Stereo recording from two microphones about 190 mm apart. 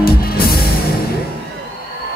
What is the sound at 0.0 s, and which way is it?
Music, 50° left (ahead or behind).